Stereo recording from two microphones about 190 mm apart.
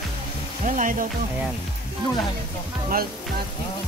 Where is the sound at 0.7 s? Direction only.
45° right (ahead or behind).